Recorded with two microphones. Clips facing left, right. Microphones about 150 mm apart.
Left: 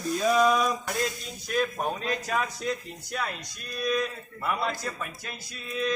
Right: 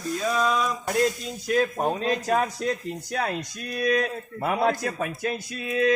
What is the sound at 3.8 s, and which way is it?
Speech, 60° right (ahead or behind).